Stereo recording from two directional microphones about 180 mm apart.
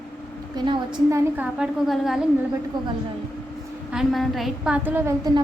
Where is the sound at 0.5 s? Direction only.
25° right (ahead or behind).